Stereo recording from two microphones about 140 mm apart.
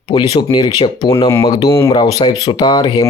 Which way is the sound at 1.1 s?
20° left (ahead or behind).